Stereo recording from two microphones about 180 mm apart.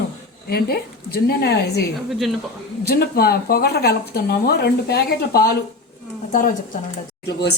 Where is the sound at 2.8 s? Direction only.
60° left (ahead or behind).